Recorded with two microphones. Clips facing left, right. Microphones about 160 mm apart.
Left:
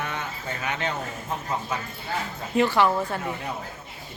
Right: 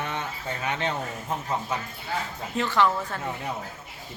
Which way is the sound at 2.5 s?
10° left (ahead or behind).